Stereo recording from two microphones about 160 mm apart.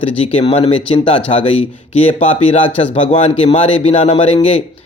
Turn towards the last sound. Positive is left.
turn(degrees=40)  # may be behind; listen again after turning